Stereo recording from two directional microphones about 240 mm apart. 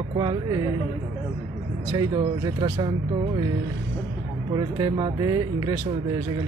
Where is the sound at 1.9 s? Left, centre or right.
Centre.